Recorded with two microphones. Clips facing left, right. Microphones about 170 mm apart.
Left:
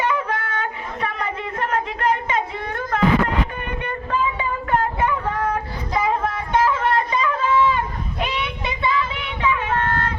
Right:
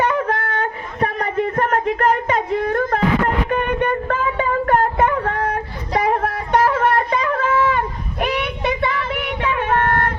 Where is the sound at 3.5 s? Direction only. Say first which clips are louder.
Right 10 dB; 60° right (ahead or behind).